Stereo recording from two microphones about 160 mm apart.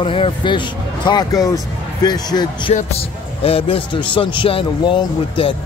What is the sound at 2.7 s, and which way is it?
Speech, 40° left (ahead or behind).